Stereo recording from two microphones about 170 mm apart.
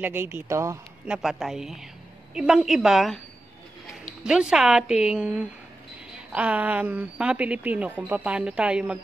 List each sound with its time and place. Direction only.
0.0 s a woman's voice: 10° right (ahead or behind)
1.0 s a woman's voice: 5° right (ahead or behind)
4.2 s a woman's voice: 5° right (ahead or behind)